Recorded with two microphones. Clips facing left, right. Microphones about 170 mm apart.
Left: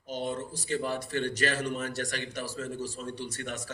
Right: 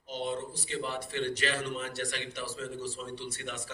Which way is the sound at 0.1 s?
45° left (ahead or behind).